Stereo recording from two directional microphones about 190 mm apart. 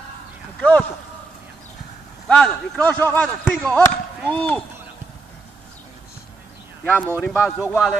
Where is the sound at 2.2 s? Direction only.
5° left (ahead or behind).